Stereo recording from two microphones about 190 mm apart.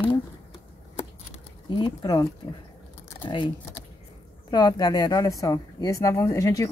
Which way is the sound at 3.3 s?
25° left (ahead or behind).